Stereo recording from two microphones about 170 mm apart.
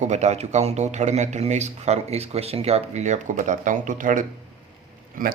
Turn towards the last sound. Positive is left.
turn(degrees=-55)  # may be behind; listen again after turning